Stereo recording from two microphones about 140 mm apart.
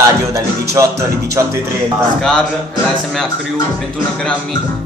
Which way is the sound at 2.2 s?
Centre (ahead or behind).